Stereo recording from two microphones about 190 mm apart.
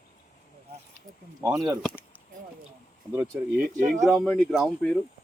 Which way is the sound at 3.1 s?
10° right (ahead or behind).